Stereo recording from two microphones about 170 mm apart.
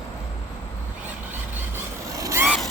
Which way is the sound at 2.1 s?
20° right (ahead or behind).